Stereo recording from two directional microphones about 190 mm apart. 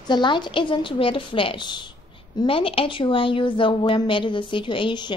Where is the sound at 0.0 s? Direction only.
25° left (ahead or behind).